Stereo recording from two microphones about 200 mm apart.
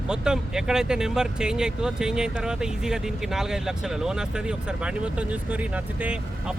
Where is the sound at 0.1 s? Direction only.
5° right (ahead or behind).